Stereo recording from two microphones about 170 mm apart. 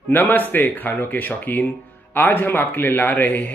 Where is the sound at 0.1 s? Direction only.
10° left (ahead or behind).